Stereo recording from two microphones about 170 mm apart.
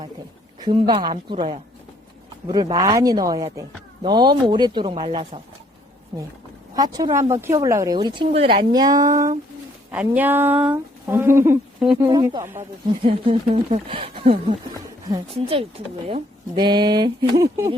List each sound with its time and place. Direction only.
0.6 s speech: 30° right (ahead or behind)
6.7 s speech: 25° right (ahead or behind)
8.7 s speech: 20° right (ahead or behind)
9.9 s speech: 10° right (ahead or behind)
12.0 s speech: 25° right (ahead or behind)
13.1 s speech: 35° right (ahead or behind)